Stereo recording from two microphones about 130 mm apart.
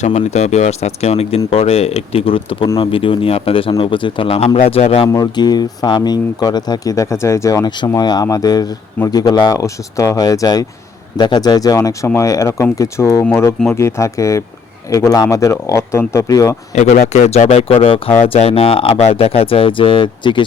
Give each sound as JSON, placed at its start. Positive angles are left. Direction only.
{"t": 0.0, "sound": "speech", "side_deg": 60}
{"t": 5.0, "sound": "speech", "side_deg": 30}
{"t": 16.7, "sound": "speech", "side_deg": 65}